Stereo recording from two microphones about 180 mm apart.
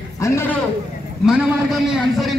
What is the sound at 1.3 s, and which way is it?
A man's voice, 5° right (ahead or behind).